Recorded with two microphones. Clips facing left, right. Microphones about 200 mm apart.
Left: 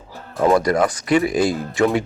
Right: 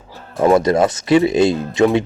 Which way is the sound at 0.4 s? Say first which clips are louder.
Right 3 dB; 25° right (ahead or behind).